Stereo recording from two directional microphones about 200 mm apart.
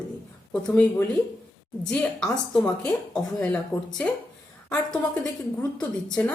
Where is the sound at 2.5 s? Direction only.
5° left (ahead or behind).